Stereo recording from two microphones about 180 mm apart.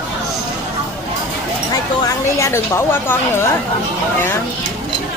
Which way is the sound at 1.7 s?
20° left (ahead or behind).